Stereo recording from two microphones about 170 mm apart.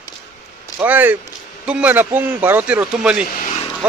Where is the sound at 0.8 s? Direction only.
10° right (ahead or behind).